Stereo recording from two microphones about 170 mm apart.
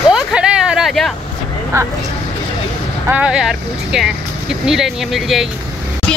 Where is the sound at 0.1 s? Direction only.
5° right (ahead or behind).